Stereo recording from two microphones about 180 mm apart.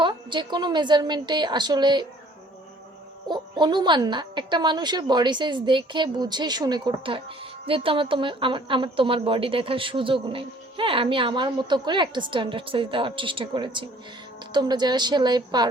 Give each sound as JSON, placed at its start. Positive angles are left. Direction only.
{"t": 0.0, "sound": "speech", "side_deg": -25}
{"t": 3.2, "sound": "speech", "side_deg": -25}